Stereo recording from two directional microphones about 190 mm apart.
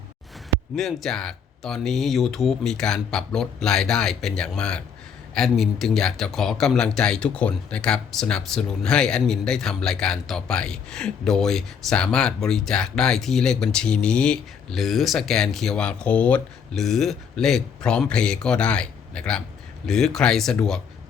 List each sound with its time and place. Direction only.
0.8 s speech: centre (ahead or behind)